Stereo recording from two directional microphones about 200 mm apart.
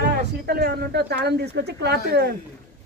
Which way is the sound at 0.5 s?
50° right (ahead or behind).